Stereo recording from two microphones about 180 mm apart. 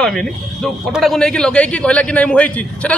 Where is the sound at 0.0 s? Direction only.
5° left (ahead or behind).